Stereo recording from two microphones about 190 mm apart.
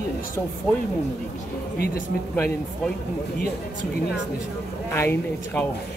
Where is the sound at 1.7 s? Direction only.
50° left (ahead or behind).